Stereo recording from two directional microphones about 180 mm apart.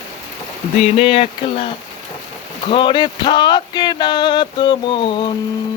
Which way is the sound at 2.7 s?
25° left (ahead or behind).